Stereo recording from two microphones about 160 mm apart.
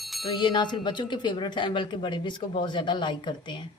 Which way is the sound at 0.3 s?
30° left (ahead or behind).